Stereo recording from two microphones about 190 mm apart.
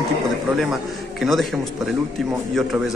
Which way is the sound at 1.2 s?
Centre (ahead or behind).